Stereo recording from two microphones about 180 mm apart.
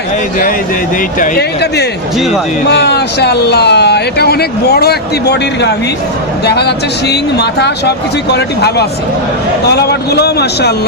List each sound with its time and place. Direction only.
1.2 s a man's voice: 65° left (ahead or behind)